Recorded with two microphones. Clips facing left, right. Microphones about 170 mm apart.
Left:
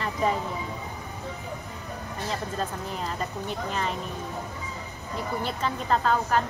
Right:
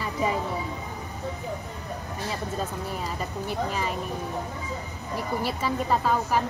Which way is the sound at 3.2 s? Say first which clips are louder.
Right 2 dB; 5° right (ahead or behind).